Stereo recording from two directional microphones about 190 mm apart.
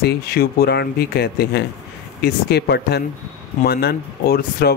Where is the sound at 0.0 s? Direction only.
55° left (ahead or behind).